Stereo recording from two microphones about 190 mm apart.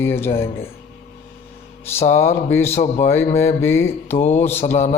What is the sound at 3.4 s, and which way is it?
Speech, 15° left (ahead or behind).